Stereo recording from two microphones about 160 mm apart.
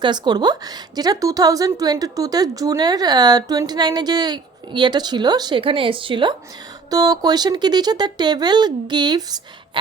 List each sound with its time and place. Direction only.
0.0 s a woman's voice: 25° right (ahead or behind)